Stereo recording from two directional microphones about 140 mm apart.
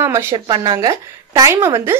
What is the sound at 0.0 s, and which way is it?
Speech, 20° right (ahead or behind).